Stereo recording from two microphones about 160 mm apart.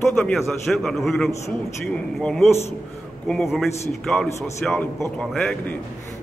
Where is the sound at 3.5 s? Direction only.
Centre (ahead or behind).